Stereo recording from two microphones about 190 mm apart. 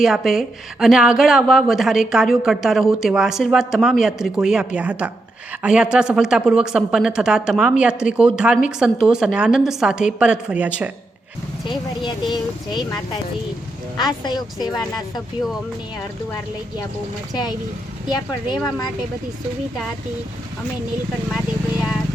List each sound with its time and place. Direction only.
0.0 s speech: centre (ahead or behind)
11.6 s speech: 25° left (ahead or behind)
17.3 s speech: 20° left (ahead or behind)